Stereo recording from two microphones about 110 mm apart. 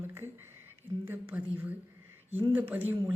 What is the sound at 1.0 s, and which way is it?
A man's voice, 20° right (ahead or behind).